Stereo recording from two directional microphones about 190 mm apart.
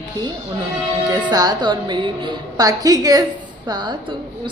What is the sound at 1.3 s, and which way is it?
A woman's voice, 20° right (ahead or behind).